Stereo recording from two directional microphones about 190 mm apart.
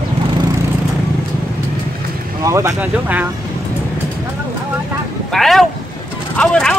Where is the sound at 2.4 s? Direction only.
15° right (ahead or behind).